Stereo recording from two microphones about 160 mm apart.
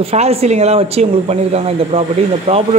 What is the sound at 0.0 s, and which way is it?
Speech, 40° right (ahead or behind).